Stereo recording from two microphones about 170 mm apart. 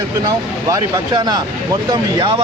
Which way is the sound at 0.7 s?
25° right (ahead or behind).